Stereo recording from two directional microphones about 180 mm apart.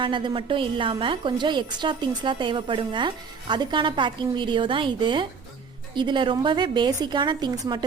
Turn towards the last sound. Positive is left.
turn(degrees=-25)  # may be behind; listen again after turning